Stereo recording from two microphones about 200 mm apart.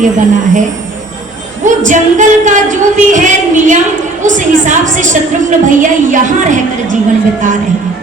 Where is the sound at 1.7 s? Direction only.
40° right (ahead or behind).